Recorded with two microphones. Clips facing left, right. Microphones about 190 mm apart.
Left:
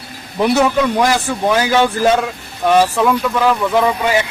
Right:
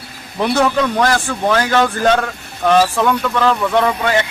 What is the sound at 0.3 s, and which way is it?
A man's voice, 5° left (ahead or behind).